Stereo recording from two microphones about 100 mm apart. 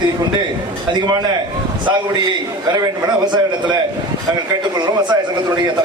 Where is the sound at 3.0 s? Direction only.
50° right (ahead or behind).